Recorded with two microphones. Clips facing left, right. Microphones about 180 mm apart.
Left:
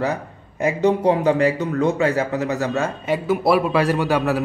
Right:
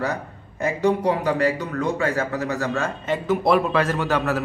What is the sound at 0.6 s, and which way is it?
A man's voice, 20° left (ahead or behind).